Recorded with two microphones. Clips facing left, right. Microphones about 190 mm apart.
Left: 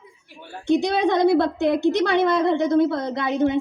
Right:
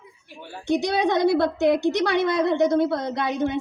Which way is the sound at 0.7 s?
55° left (ahead or behind).